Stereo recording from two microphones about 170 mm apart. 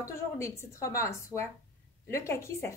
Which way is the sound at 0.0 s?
15° left (ahead or behind).